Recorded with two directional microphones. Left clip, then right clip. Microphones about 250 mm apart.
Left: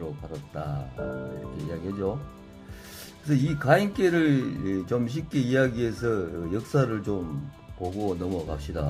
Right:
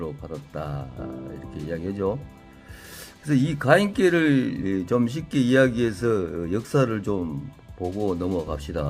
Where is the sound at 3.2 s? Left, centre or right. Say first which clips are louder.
Right 3 dB; right.